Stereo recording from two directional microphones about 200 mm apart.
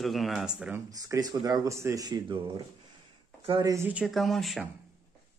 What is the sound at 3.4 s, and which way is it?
Speech, 20° right (ahead or behind).